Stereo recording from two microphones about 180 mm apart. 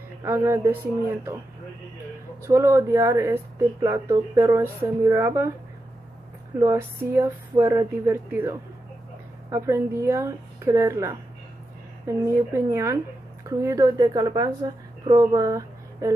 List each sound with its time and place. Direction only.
0.2 s speech: 15° right (ahead or behind)
2.4 s speech: 15° right (ahead or behind)
6.6 s speech: 15° right (ahead or behind)
12.3 s a woman's voice: 15° right (ahead or behind)